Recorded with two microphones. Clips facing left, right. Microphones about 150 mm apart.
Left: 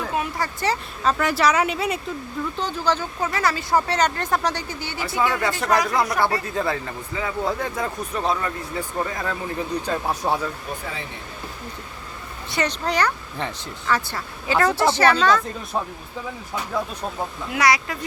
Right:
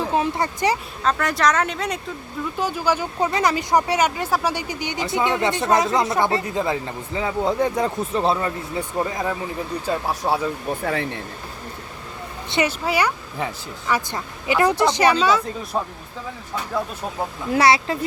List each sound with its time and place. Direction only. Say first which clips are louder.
0.0 s a sound: right 4 dB; 30° right (ahead or behind)
1.0 s speech: even; 5° left (ahead or behind)
2.6 s speech: right 3 dB; 10° right (ahead or behind)
9.8 s speech: right 1 dB; 5° right (ahead or behind)
10.8 s speech: right 9 dB; 65° right (ahead or behind)
12.6 s speech: even; 5° right (ahead or behind)
17.5 s speech: right 4 dB; 30° right (ahead or behind)